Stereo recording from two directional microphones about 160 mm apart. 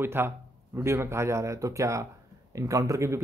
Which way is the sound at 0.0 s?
15° right (ahead or behind).